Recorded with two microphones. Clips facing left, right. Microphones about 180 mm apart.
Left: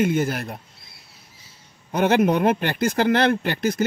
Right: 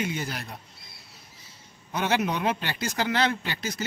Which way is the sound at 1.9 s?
55° left (ahead or behind).